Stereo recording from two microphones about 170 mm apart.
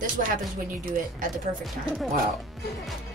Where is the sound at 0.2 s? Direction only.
55° right (ahead or behind).